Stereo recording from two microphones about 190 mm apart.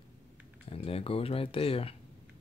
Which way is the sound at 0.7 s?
30° left (ahead or behind).